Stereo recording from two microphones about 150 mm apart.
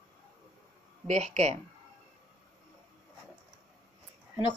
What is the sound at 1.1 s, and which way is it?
Speech, 50° right (ahead or behind).